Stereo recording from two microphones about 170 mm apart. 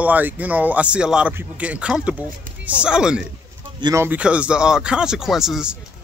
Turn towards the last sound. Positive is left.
turn(degrees=0)  # may be behind; listen again after turning